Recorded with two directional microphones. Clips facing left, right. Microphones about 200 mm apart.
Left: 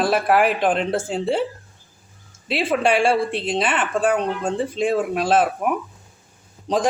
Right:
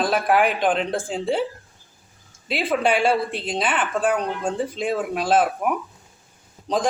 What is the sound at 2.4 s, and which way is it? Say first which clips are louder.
Speech: left 2 dB; centre (ahead or behind).